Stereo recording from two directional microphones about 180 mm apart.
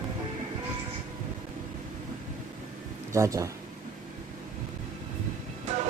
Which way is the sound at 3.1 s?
15° right (ahead or behind).